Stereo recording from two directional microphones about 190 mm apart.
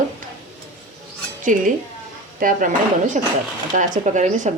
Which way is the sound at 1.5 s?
40° right (ahead or behind).